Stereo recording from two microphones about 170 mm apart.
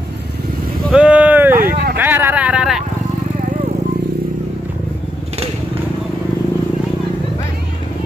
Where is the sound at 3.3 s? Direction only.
45° right (ahead or behind).